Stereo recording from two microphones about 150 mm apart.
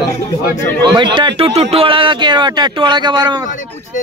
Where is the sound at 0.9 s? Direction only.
30° right (ahead or behind).